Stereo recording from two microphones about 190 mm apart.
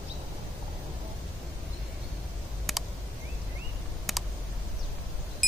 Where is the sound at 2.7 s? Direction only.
Centre (ahead or behind).